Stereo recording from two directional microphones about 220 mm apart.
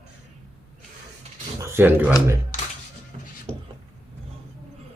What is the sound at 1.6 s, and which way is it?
Speech, 10° right (ahead or behind).